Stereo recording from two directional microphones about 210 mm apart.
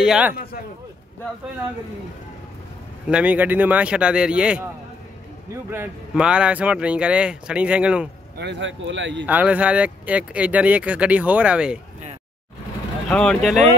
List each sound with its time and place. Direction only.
0.0 s speech: 5° right (ahead or behind)
3.1 s speech: 5° right (ahead or behind)
5.7 s speech: 5° right (ahead or behind)
8.4 s speech: 60° right (ahead or behind)
9.2 s speech: 5° right (ahead or behind)
13.1 s speech: 5° left (ahead or behind)